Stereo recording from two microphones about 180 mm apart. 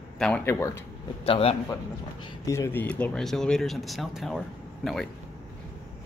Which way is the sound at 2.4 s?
15° left (ahead or behind).